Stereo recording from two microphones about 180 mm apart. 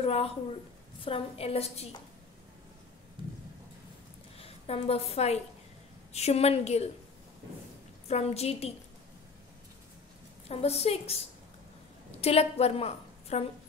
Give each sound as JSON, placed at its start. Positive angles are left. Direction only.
{"t": 0.0, "sound": "a woman's voice", "side_deg": 35}
{"t": 4.4, "sound": "a woman's voice", "side_deg": 35}
{"t": 8.1, "sound": "a woman's voice", "side_deg": 35}
{"t": 10.5, "sound": "a woman's voice", "side_deg": 35}
{"t": 12.2, "sound": "a woman's voice", "side_deg": 35}